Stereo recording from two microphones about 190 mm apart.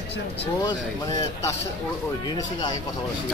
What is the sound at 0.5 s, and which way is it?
Speech, 20° left (ahead or behind).